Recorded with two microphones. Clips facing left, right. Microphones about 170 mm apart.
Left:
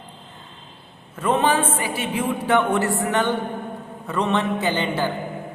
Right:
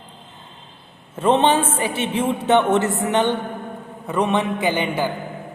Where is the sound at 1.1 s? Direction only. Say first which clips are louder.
Right 3 dB; 25° right (ahead or behind).